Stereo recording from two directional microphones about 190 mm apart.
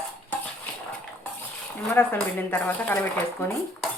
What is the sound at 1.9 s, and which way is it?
Speech, 10° left (ahead or behind).